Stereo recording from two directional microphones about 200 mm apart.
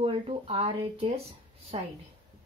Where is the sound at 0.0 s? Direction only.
30° right (ahead or behind).